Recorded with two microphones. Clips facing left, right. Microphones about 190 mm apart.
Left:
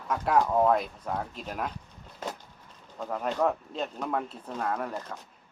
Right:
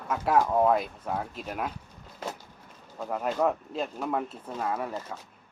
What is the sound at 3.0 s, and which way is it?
Speech, 5° right (ahead or behind).